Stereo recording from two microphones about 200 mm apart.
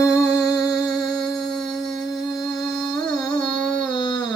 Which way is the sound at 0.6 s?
5° right (ahead or behind).